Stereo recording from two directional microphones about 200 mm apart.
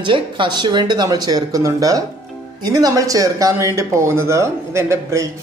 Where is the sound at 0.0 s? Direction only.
25° right (ahead or behind).